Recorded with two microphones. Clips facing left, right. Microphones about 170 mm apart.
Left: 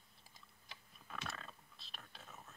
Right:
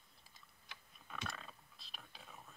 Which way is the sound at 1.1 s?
Centre (ahead or behind).